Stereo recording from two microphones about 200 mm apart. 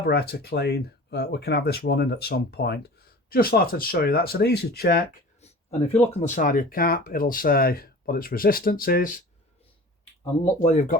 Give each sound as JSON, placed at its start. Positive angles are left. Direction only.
{"t": 0.0, "sound": "speech", "side_deg": 50}
{"t": 6.1, "sound": "speech", "side_deg": 35}
{"t": 10.6, "sound": "speech", "side_deg": 35}